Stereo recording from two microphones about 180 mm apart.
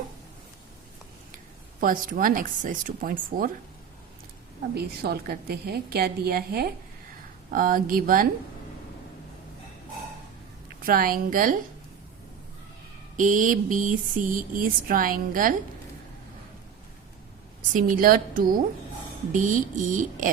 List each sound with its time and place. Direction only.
1.8 s speech: 50° right (ahead or behind)
4.7 s a woman's voice: 60° right (ahead or behind)
10.8 s speech: 55° right (ahead or behind)
13.1 s speech: 45° right (ahead or behind)
17.6 s speech: 50° right (ahead or behind)